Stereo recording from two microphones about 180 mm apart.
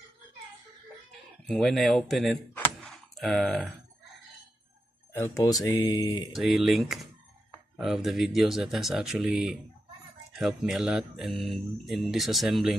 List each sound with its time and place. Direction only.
1.4 s speech: 5° left (ahead or behind)
2.5 s a sound: 5° left (ahead or behind)
5.1 s speech: 15° left (ahead or behind)
6.3 s speech: centre (ahead or behind)